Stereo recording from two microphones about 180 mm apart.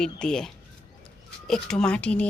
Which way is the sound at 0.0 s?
5° left (ahead or behind).